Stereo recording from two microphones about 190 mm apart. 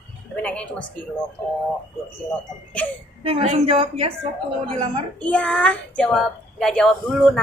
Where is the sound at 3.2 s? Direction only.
30° right (ahead or behind).